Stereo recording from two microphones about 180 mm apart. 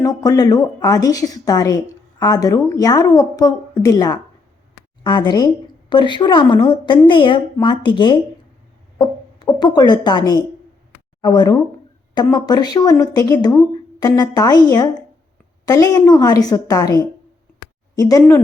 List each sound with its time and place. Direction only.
0.0 s a woman's voice: 20° left (ahead or behind)